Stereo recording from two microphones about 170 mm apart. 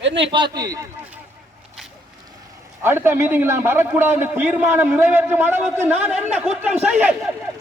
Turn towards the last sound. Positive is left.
turn(degrees=-5)  # may be behind; listen again after turning